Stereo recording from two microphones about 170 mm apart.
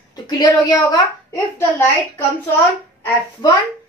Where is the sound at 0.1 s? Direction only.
25° left (ahead or behind).